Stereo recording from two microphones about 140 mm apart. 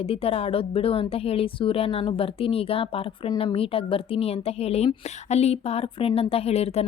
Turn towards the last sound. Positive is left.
turn(degrees=50)  # may be behind; listen again after turning